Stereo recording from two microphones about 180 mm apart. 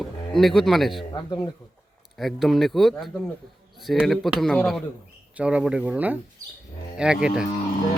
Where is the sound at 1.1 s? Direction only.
25° left (ahead or behind).